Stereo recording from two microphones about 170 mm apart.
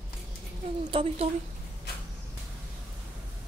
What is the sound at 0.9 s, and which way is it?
Speech, 35° right (ahead or behind).